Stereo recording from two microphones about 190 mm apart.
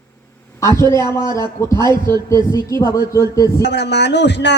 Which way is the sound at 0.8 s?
15° left (ahead or behind).